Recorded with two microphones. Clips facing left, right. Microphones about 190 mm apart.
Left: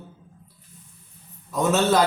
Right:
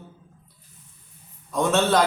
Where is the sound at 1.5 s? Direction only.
5° left (ahead or behind).